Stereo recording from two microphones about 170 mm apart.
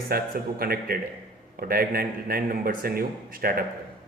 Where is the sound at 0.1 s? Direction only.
60° right (ahead or behind).